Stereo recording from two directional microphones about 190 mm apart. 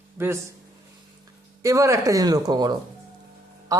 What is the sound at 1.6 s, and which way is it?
A man's voice, 15° right (ahead or behind).